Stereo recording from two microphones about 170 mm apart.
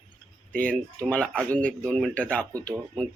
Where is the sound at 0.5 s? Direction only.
10° left (ahead or behind).